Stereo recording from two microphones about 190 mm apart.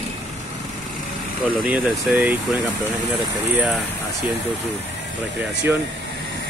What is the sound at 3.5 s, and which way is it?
Speech, 5° right (ahead or behind).